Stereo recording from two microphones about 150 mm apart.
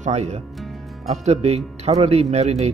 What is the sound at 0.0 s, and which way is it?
Speech, 50° right (ahead or behind).